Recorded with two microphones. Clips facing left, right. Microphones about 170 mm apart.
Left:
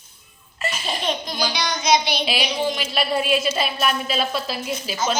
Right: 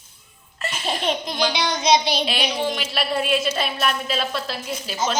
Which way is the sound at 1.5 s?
30° right (ahead or behind).